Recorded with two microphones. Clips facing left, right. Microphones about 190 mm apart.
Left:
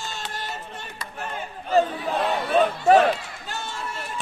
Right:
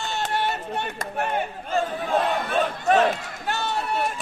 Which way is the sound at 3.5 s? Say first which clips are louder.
Right 8 dB; 70° right (ahead or behind).